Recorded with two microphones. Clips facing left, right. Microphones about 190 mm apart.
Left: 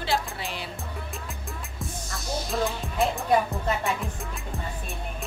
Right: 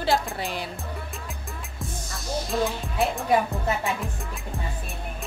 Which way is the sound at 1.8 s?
Centre (ahead or behind).